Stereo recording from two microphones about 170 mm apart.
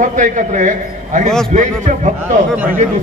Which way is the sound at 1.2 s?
5° left (ahead or behind).